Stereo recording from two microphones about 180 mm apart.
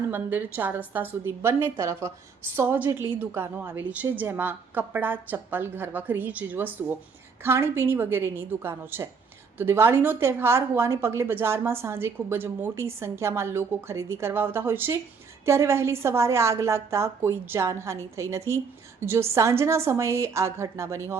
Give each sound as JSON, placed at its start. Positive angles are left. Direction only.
{"t": 0.1, "sound": "a woman's voice", "side_deg": -10}